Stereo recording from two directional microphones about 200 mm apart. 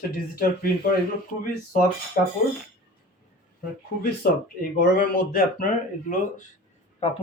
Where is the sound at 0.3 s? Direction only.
45° left (ahead or behind).